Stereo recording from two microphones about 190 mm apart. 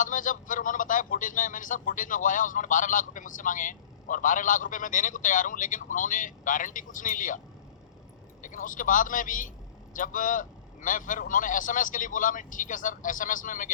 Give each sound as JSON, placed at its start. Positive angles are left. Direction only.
{"t": 0.0, "sound": "speech", "side_deg": 45}